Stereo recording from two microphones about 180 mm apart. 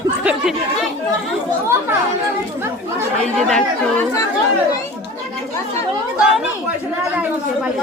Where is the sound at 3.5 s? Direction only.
5° left (ahead or behind).